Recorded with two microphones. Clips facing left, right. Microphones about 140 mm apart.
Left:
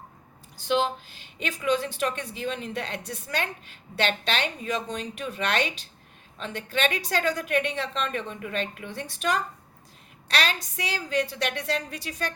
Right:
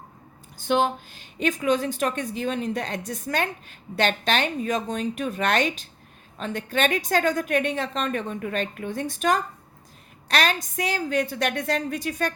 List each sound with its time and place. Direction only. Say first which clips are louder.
0.5 s speech: right 3 dB; 50° right (ahead or behind)